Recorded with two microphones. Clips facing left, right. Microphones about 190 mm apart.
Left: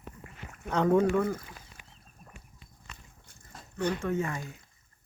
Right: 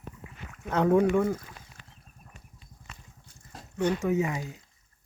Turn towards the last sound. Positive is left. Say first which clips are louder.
# right 4 dB
turn(degrees=-15)  # may be behind; listen again after turning